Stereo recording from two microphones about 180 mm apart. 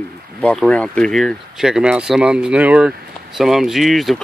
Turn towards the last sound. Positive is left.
turn(degrees=0)  # may be behind; listen again after turning